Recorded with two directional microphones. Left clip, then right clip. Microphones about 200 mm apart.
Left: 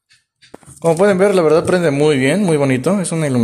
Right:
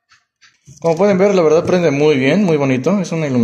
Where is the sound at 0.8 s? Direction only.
20° left (ahead or behind).